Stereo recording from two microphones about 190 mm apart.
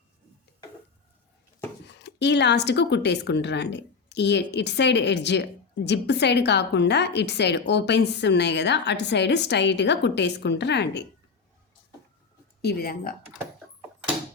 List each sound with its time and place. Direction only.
2.0 s speech: 65° left (ahead or behind)
12.6 s speech: 50° left (ahead or behind)